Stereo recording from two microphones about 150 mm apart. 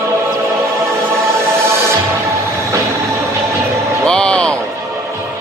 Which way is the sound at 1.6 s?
15° right (ahead or behind).